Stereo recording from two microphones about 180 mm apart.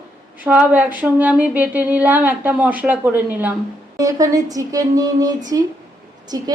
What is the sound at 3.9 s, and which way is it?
A woman's voice, 20° right (ahead or behind).